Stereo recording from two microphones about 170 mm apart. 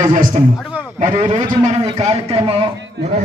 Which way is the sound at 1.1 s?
30° right (ahead or behind).